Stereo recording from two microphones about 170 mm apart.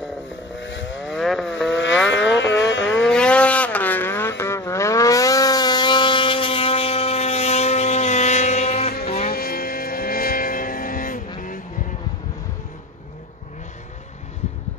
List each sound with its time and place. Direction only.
0.6 s vehicle: 90° left
1.0 s vehicle: centre (ahead or behind)
1.7 s vehicle: 90° left
2.3 s music: 90° left
2.9 s a sound: 5° left (ahead or behind); by 8.9 s 40° left (ahead or behind)
9.0 s music: 35° left (ahead or behind)
9.3 s vehicle: 60° left (ahead or behind)